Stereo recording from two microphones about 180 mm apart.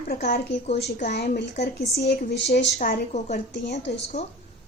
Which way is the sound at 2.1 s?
70° left (ahead or behind).